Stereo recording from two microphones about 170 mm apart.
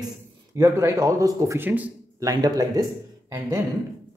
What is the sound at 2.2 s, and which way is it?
Speech, 20° right (ahead or behind).